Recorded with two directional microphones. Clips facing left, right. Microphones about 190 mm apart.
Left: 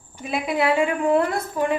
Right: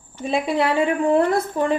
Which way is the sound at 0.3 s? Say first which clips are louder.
Right 1 dB; 30° right (ahead or behind).